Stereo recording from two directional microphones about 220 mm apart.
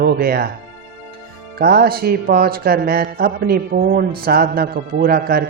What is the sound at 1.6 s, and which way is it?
Speech, 45° right (ahead or behind).